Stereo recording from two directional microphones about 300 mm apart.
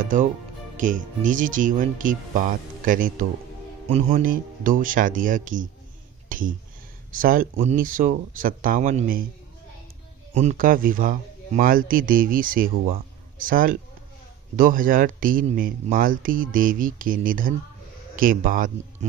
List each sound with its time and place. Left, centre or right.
0.0 s speech: right
6.2 s a sound: right
7.2 s speech: right
10.3 s speech: right